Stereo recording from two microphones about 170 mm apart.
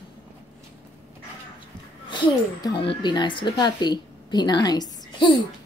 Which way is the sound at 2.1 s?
25° left (ahead or behind).